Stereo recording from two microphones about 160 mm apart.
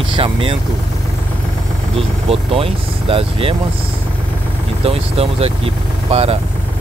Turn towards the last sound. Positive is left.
turn(degrees=-35)  # may be behind; listen again after turning